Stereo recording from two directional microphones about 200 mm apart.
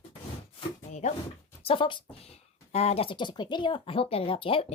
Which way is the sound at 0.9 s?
35° left (ahead or behind).